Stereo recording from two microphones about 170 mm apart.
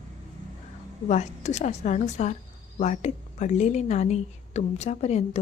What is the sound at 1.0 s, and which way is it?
A woman's voice, 45° left (ahead or behind).